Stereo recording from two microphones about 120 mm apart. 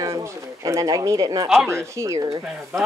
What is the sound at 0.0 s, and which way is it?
Speech, 25° right (ahead or behind).